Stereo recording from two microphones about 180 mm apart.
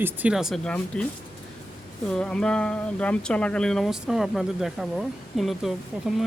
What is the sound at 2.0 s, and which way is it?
Speech, 5° left (ahead or behind).